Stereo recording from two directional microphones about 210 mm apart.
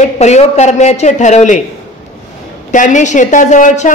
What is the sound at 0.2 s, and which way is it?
A woman's voice, 30° left (ahead or behind).